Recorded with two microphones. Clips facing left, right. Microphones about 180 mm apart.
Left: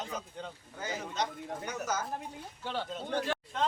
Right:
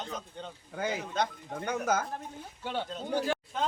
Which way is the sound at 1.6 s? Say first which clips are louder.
Right 7 dB; 55° right (ahead or behind).